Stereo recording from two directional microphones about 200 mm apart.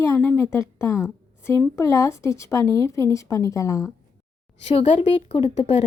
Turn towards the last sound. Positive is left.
turn(degrees=30)  # may be behind; listen again after turning